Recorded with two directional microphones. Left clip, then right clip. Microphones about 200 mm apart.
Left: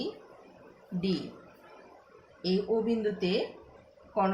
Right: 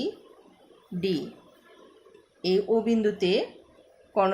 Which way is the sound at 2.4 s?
45° right (ahead or behind).